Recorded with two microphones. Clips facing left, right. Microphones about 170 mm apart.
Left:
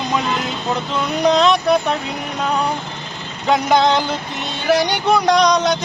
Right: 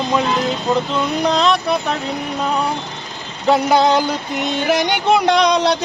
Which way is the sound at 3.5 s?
10° right (ahead or behind).